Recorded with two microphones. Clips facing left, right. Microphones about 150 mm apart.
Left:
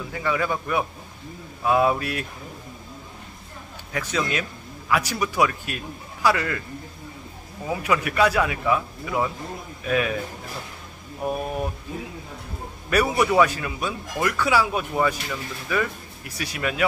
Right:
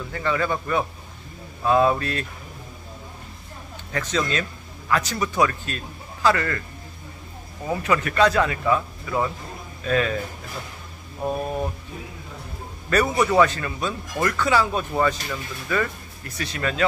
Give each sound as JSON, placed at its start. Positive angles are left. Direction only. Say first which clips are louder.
{"t": 0.1, "sound": "a man's voice", "louder": "right 1 dB", "side_deg": 10}
{"t": 3.9, "sound": "a man's voice", "louder": "right 1 dB", "side_deg": 10}
{"t": 7.6, "sound": "a man's voice", "louder": "right 1 dB", "side_deg": 10}
{"t": 11.2, "sound": "a man's voice", "louder": "right 1 dB", "side_deg": 10}
{"t": 12.9, "sound": "a man's voice", "louder": "even", "side_deg": 10}